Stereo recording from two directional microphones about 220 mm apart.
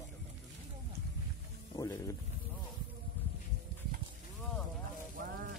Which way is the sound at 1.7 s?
15° left (ahead or behind).